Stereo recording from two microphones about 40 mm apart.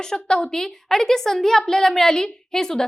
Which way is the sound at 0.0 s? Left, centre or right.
Centre.